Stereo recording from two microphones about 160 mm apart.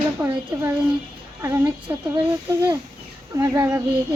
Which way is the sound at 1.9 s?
20° right (ahead or behind).